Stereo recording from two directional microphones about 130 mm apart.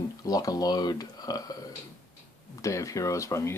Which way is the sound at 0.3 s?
30° left (ahead or behind).